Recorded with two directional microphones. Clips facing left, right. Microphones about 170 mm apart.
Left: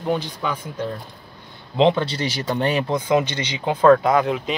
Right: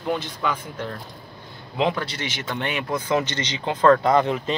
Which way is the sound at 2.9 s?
15° left (ahead or behind).